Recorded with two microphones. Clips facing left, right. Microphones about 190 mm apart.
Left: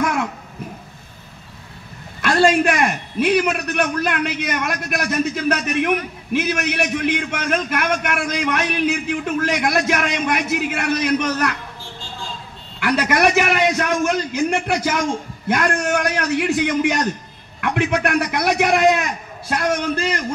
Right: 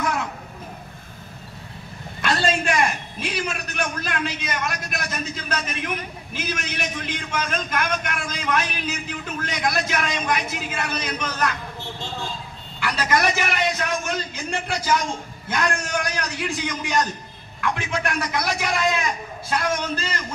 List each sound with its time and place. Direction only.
0.0 s a sound: 55° left (ahead or behind)
2.2 s a man's voice: 60° left (ahead or behind)
12.8 s a man's voice: 60° left (ahead or behind)
13.8 s a man's voice: 70° left (ahead or behind)